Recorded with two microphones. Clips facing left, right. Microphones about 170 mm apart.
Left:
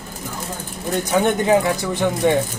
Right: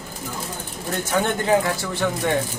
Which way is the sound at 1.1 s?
15° left (ahead or behind).